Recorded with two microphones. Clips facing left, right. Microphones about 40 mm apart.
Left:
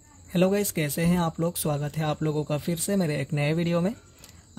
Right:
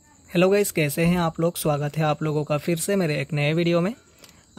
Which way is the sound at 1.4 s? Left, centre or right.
Right.